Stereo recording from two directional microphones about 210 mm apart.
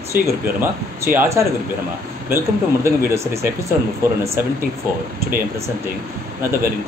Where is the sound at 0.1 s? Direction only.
10° right (ahead or behind).